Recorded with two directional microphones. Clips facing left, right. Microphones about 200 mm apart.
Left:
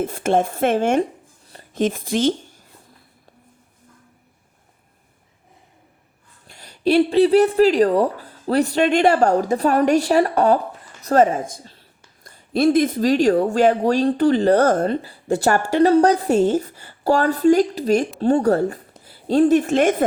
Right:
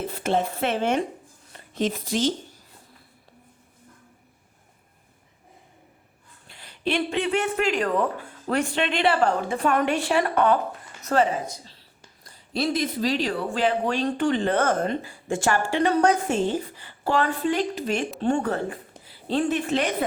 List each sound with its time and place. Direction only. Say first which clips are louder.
0.0 s speech: left 6 dB; 50° left (ahead or behind)
1.5 s a sound: left 6 dB; 35° left (ahead or behind)
1.8 s speech: left 5 dB; 50° left (ahead or behind)
6.5 s a woman's voice: left 9 dB; 40° left (ahead or behind)